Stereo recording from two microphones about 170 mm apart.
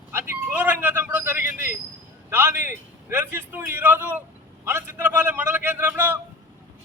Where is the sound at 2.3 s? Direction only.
15° right (ahead or behind).